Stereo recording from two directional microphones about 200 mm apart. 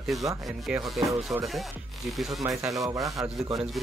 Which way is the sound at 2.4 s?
15° right (ahead or behind).